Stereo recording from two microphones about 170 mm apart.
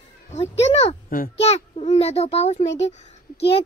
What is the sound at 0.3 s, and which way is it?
A child's voice, 40° left (ahead or behind).